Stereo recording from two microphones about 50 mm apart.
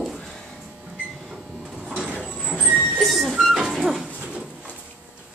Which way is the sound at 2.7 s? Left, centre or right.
Centre.